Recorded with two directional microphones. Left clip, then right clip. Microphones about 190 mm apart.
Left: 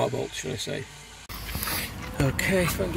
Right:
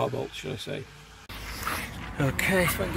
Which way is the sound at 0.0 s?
5° left (ahead or behind).